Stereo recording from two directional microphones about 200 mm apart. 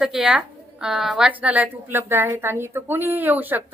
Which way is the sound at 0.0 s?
5° right (ahead or behind).